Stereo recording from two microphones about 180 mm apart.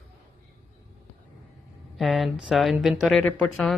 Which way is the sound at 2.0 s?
Centre (ahead or behind).